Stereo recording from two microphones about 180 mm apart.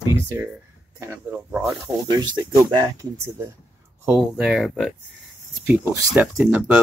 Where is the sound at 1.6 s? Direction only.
20° right (ahead or behind).